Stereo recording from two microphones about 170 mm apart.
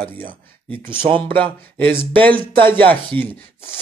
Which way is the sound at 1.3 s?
30° right (ahead or behind).